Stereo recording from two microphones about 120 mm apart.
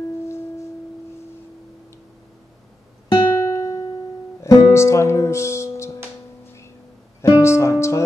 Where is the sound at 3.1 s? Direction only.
25° left (ahead or behind).